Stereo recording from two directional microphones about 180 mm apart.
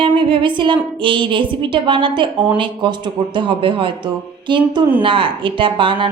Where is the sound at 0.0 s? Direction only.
30° right (ahead or behind).